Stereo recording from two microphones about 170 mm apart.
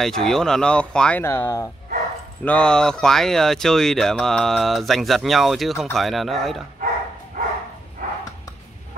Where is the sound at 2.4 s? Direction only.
5° left (ahead or behind).